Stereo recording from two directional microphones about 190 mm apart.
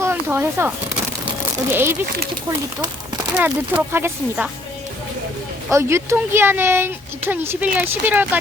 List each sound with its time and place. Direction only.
0.0 s a sound: 10° right (ahead or behind)
1.7 s speech: 10° right (ahead or behind)
5.7 s speech: 15° right (ahead or behind)